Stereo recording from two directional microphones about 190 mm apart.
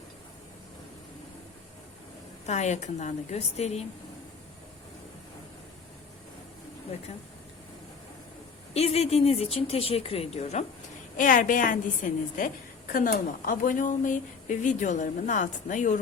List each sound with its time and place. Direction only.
2.5 s speech: 35° left (ahead or behind)
8.7 s a woman's voice: 35° left (ahead or behind)